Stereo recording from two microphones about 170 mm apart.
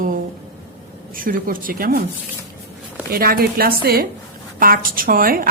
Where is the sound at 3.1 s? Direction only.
60° right (ahead or behind).